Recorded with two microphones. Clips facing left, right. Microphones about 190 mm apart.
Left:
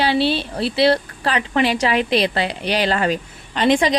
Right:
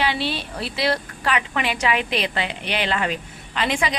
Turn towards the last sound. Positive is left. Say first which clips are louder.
# left 7 dB
turn(degrees=35)  # may be behind; listen again after turning